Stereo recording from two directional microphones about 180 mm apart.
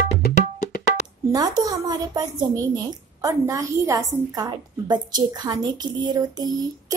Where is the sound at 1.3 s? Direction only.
20° right (ahead or behind).